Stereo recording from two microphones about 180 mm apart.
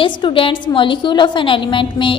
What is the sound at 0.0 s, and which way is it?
A woman's voice, 30° left (ahead or behind).